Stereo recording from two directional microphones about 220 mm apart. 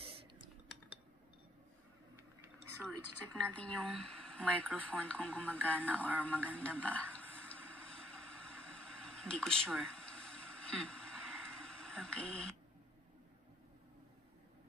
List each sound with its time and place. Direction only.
0.0 s typing: 25° right (ahead or behind)
2.4 s a sound: 10° right (ahead or behind)
3.3 s a woman's voice: 5° left (ahead or behind)
4.7 s radio: 5° left (ahead or behind)